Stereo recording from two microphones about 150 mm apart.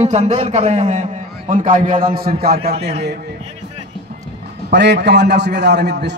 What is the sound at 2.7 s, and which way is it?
Speech, 45° right (ahead or behind).